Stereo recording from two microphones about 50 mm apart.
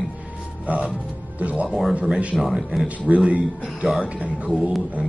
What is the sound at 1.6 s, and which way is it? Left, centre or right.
Speech, centre.